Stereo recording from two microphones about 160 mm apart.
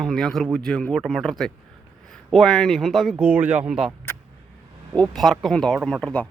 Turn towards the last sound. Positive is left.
turn(degrees=5)  # may be behind; listen again after turning